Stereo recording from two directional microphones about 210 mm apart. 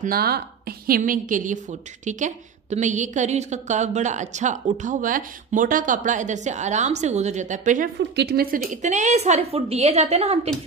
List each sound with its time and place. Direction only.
0.0 s a woman's voice: 45° right (ahead or behind)
8.0 s a woman's voice: 50° right (ahead or behind); by 10.5 s 30° right (ahead or behind)